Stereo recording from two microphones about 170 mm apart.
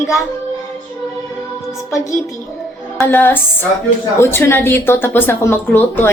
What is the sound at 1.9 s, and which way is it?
Speech, 15° left (ahead or behind).